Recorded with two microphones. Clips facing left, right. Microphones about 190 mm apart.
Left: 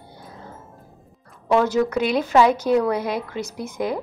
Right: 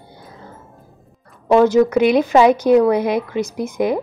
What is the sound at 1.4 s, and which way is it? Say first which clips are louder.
A woman's voice: right 6 dB; 15° right (ahead or behind).